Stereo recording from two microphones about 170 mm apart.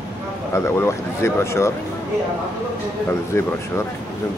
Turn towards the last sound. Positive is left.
turn(degrees=15)  # may be behind; listen again after turning